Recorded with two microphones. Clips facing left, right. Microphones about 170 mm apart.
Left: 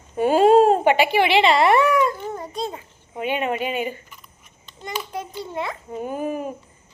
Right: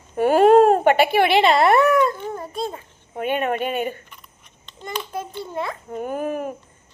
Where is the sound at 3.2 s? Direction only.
50° right (ahead or behind).